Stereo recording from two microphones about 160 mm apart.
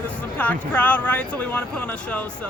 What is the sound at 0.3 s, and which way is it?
Speech, 10° left (ahead or behind).